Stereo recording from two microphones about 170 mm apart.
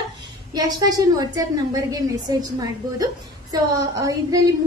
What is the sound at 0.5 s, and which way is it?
A woman's voice, 20° right (ahead or behind).